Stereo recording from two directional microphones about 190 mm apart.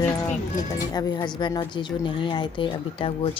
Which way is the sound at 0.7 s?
20° left (ahead or behind).